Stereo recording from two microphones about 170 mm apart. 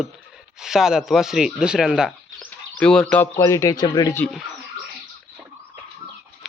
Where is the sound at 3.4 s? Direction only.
20° left (ahead or behind).